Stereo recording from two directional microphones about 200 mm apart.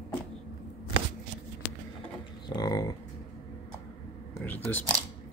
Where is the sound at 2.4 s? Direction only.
20° left (ahead or behind).